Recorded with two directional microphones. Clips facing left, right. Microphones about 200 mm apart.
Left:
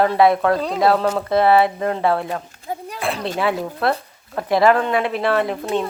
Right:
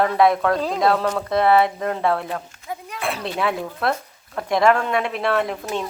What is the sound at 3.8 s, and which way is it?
Speech, centre (ahead or behind).